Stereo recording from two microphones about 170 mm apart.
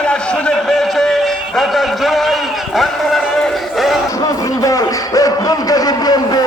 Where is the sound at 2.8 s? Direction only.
Centre (ahead or behind).